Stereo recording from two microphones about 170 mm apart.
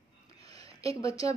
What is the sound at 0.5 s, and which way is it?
Speech, 20° left (ahead or behind).